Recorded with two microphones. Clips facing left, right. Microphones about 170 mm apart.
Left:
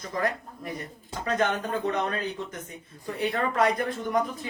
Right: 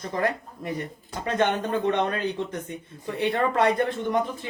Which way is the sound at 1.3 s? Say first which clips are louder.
Right 3 dB; 30° right (ahead or behind).